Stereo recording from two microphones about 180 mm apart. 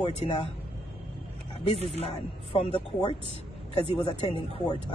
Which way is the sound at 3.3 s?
30° right (ahead or behind).